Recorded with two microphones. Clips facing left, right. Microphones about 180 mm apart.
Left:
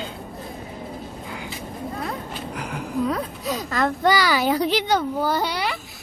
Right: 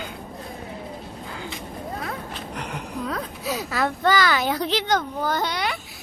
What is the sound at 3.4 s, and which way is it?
Speech, 10° right (ahead or behind).